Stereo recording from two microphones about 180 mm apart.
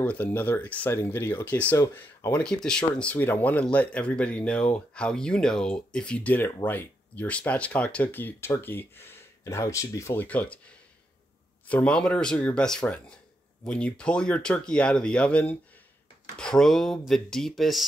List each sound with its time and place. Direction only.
0.0 s speech: 10° left (ahead or behind)
11.6 s speech: 5° left (ahead or behind)